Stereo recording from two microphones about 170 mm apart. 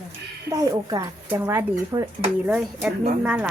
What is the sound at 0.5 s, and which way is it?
A woman's voice, 20° right (ahead or behind).